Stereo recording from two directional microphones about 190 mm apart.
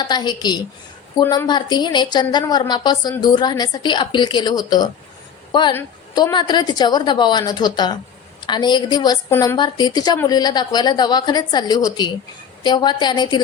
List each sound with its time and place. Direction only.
0.0 s a woman's voice: 20° left (ahead or behind)
1.2 s a woman's voice: 10° left (ahead or behind)
1.5 s a woman's voice: 25° left (ahead or behind)